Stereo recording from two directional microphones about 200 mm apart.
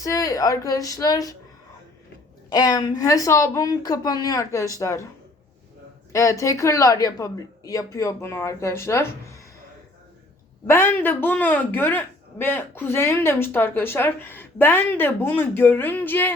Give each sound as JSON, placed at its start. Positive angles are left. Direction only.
{"t": 0.0, "sound": "speech", "side_deg": 15}
{"t": 2.5, "sound": "speech", "side_deg": 20}
{"t": 6.1, "sound": "speech", "side_deg": 15}
{"t": 10.7, "sound": "speech", "side_deg": 10}